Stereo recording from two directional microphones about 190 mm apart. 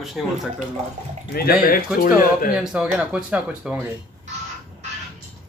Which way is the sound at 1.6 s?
45° left (ahead or behind).